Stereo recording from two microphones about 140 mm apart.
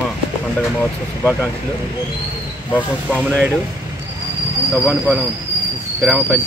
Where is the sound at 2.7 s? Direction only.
10° left (ahead or behind).